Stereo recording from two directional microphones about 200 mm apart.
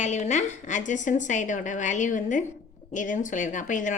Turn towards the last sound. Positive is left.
turn(degrees=40)  # may be behind; listen again after turning